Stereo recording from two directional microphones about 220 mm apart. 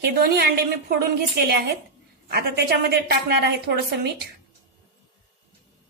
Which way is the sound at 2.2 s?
50° right (ahead or behind).